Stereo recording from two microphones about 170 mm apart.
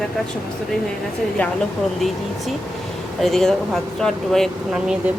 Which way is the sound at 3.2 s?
Centre (ahead or behind).